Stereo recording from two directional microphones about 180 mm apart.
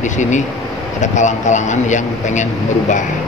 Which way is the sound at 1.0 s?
40° left (ahead or behind).